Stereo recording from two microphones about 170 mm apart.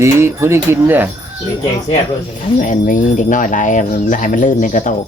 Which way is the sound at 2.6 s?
50° left (ahead or behind).